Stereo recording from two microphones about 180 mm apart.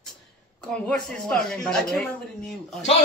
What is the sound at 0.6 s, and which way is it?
A woman's voice, 5° left (ahead or behind).